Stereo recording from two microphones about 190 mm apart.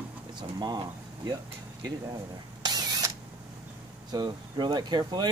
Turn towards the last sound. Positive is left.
turn(degrees=-20)  # may be behind; listen again after turning